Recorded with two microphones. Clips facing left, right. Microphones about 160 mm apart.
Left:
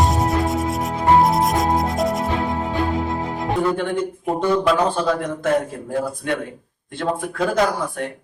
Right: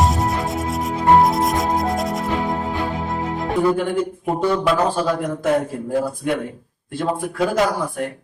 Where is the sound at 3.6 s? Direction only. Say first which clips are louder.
Right 2 dB; 5° right (ahead or behind).